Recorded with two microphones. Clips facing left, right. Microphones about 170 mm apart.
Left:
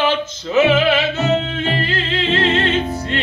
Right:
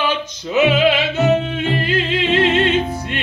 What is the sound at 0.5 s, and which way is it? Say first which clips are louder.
Music: left 1 dB; 15° right (ahead or behind).